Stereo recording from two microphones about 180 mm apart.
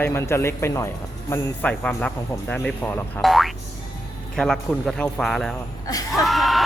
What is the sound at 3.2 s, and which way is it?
Speech, centre (ahead or behind).